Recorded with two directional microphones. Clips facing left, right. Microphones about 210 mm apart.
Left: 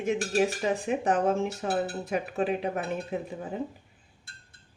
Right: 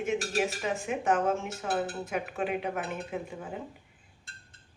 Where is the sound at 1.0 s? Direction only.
35° left (ahead or behind).